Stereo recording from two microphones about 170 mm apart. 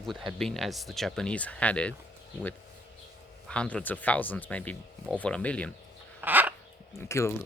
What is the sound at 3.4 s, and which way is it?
Speech, 5° left (ahead or behind).